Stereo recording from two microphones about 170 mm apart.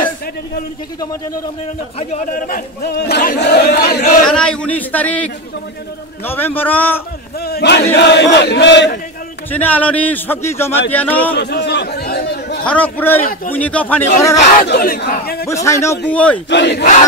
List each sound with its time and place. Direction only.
2.0 s speech: 45° left (ahead or behind); by 4.0 s 70° left (ahead or behind)
4.0 s speech: 55° left (ahead or behind)
4.3 s a man's voice: 5° left (ahead or behind)
7.4 s battle cry: 75° left (ahead or behind); by 8.9 s 90° left
9.5 s a man's voice: 10° left (ahead or behind)
11.3 s a sound: 75° left (ahead or behind)
12.6 s a man's voice: 10° left (ahead or behind)
14.6 s speech: 60° left (ahead or behind)
15.4 s a man's voice: 20° left (ahead or behind)
16.4 s battle cry: 90° left